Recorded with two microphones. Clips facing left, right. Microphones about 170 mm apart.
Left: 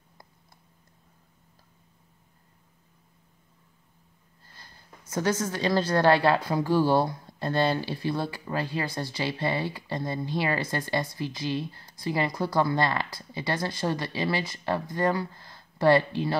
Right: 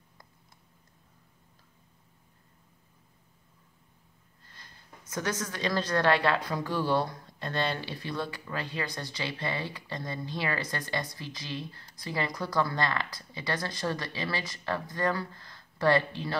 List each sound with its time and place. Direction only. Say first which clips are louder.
5.1 s a woman's voice: left 6 dB; 30° left (ahead or behind)